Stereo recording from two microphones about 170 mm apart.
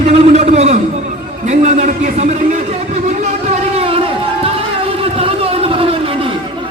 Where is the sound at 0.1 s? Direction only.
40° right (ahead or behind).